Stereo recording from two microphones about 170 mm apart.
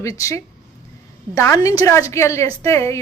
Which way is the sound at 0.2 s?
20° left (ahead or behind).